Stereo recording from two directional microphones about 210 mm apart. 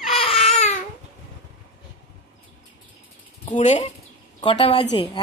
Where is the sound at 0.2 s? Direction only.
25° left (ahead or behind).